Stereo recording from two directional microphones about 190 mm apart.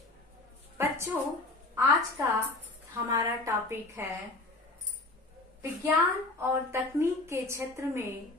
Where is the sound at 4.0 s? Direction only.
10° right (ahead or behind).